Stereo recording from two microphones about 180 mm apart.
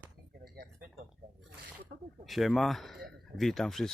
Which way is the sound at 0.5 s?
60° right (ahead or behind).